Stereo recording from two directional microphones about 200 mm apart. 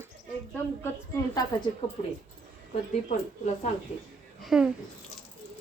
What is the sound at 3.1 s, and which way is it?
Speech, 40° left (ahead or behind).